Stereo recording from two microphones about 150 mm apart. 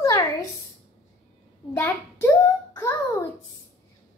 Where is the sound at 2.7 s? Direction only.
15° left (ahead or behind).